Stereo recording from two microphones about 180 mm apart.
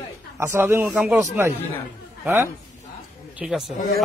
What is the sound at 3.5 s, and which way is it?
Speech, 5° right (ahead or behind).